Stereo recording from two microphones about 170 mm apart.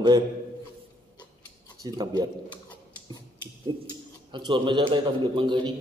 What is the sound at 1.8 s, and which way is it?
Speech, 20° right (ahead or behind).